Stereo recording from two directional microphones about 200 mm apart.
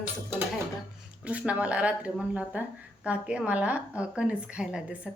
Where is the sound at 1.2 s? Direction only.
5° right (ahead or behind).